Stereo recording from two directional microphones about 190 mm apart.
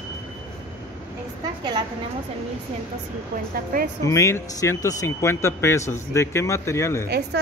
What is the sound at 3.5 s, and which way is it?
Speech, 50° right (ahead or behind).